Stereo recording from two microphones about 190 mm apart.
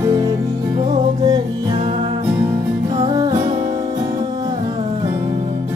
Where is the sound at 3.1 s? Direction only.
15° right (ahead or behind).